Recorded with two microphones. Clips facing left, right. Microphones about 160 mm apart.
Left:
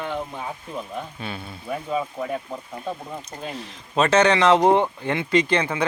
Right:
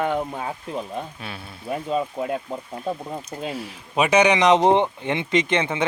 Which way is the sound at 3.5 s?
10° right (ahead or behind).